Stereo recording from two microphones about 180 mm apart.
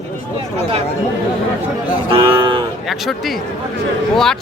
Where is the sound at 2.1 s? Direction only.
30° right (ahead or behind).